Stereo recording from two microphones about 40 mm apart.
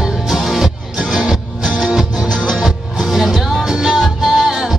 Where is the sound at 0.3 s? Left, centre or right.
Centre.